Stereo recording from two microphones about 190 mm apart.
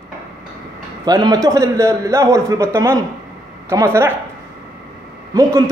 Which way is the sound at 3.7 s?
15° right (ahead or behind).